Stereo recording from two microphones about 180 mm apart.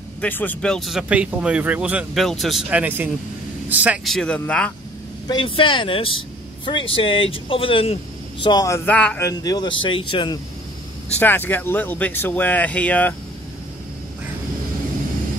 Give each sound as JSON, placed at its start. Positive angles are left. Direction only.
{"t": 0.2, "sound": "speech", "side_deg": 10}
{"t": 5.3, "sound": "speech", "side_deg": 30}
{"t": 9.3, "sound": "speech", "side_deg": 20}
{"t": 11.1, "sound": "speech", "side_deg": 10}